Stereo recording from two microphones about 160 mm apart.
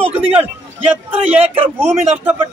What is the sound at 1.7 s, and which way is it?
Speech, 15° right (ahead or behind).